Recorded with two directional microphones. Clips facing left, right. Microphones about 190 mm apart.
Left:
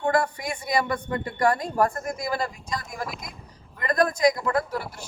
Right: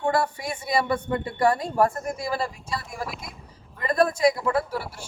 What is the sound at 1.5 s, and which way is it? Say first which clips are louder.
Speech: right 1 dB; 25° right (ahead or behind).